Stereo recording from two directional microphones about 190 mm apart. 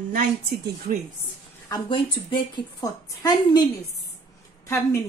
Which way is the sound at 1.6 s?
25° left (ahead or behind).